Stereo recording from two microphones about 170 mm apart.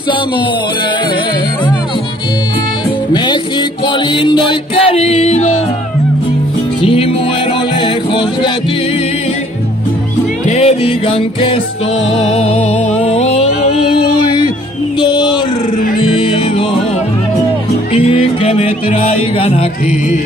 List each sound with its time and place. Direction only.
3.8 s music: 25° left (ahead or behind)
6.8 s music: 30° left (ahead or behind)
10.4 s music: 40° left (ahead or behind)
16.1 s music: 35° left (ahead or behind)
17.9 s music: 35° left (ahead or behind)